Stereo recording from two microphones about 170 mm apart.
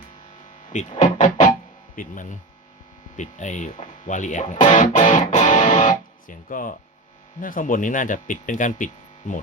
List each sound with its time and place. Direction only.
0.7 s speech: 45° left (ahead or behind)